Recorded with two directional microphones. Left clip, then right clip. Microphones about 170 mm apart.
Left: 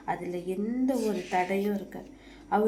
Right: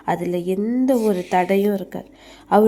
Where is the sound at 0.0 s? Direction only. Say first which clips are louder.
Right 10 dB; 60° right (ahead or behind).